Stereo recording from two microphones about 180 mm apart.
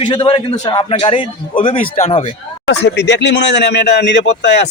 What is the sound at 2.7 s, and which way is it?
Speech, 75° left (ahead or behind).